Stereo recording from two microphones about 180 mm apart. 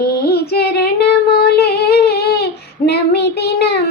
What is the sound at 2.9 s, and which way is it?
Child singing, 65° left (ahead or behind).